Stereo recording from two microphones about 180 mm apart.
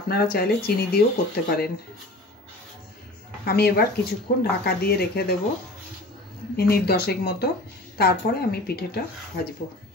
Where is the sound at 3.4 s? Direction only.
60° left (ahead or behind).